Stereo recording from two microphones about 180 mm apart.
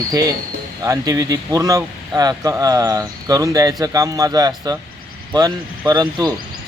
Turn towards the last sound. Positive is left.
turn(degrees=-25)  # may be behind; listen again after turning